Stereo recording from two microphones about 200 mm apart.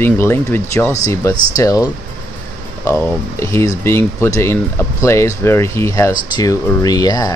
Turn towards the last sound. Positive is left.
turn(degrees=20)  # may be behind; listen again after turning